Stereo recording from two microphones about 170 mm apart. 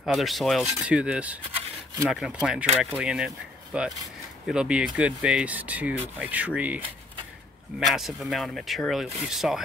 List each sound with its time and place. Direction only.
0.0 s speech: centre (ahead or behind)
7.8 s speech: centre (ahead or behind)